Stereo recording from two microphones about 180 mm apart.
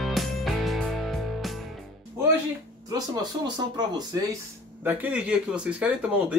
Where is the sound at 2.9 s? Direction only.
25° right (ahead or behind).